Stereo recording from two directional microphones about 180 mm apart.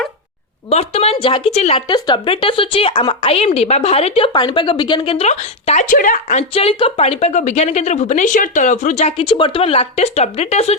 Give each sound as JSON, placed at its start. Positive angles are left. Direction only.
{"t": 0.7, "sound": "a woman's voice", "side_deg": 35}
{"t": 6.5, "sound": "a woman's voice", "side_deg": 35}